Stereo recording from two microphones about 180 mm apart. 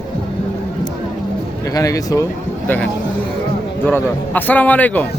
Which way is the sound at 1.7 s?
20° left (ahead or behind).